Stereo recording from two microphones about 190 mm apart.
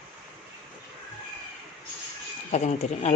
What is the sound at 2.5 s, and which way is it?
Speech, 40° left (ahead or behind).